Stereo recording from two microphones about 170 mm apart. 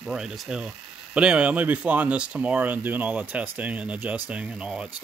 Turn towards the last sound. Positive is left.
turn(degrees=-5)  # may be behind; listen again after turning